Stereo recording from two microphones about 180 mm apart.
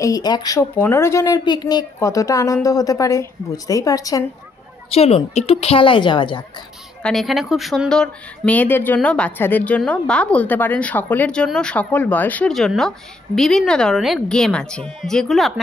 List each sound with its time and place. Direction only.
0.0 s speech: 20° left (ahead or behind)
4.9 s a woman's voice: 35° left (ahead or behind)
7.0 s speech: centre (ahead or behind)